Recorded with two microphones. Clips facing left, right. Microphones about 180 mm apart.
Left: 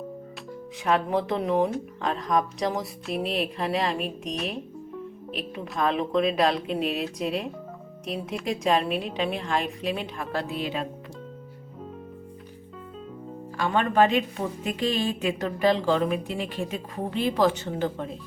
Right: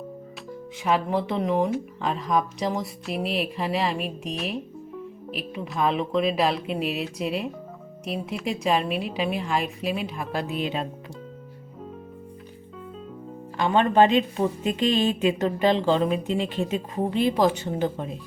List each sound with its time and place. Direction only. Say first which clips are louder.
0.9 s speech: even; centre (ahead or behind)
10.4 s a woman's voice: right 2 dB; 20° right (ahead or behind)
13.6 s a woman's voice: right 3 dB; 20° right (ahead or behind)